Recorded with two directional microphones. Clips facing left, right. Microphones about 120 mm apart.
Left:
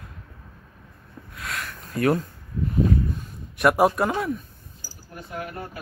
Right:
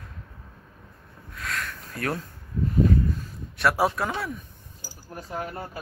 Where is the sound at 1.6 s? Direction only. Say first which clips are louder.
Left 11 dB; 5° left (ahead or behind).